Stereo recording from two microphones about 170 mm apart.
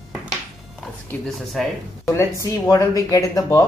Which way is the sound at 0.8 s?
Centre (ahead or behind).